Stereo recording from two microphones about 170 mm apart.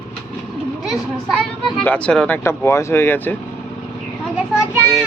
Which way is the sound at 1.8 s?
5° left (ahead or behind).